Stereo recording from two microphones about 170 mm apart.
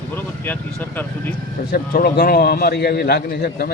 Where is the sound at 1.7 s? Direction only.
65° left (ahead or behind).